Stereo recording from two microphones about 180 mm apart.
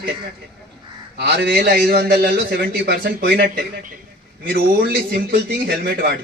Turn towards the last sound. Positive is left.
turn(degrees=-60)  # may be behind; listen again after turning